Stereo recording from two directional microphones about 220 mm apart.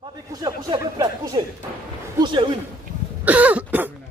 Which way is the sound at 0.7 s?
20° right (ahead or behind).